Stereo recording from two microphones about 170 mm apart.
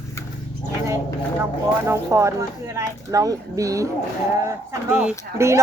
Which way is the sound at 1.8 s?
15° right (ahead or behind).